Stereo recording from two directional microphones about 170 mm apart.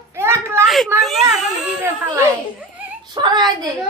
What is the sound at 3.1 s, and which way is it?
Whimper, 25° right (ahead or behind).